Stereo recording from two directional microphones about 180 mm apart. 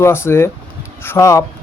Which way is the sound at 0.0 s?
15° left (ahead or behind).